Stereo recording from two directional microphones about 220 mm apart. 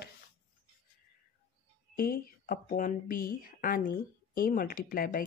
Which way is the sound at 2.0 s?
40° left (ahead or behind).